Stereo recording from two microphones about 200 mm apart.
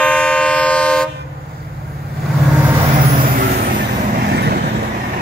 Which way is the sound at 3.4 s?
45° right (ahead or behind).